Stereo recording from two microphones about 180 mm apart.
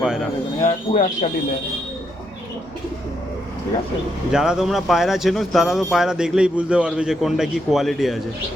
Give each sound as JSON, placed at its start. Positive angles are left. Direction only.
{"t": 0.6, "sound": "speech", "side_deg": 40}
{"t": 4.3, "sound": "speech", "side_deg": -5}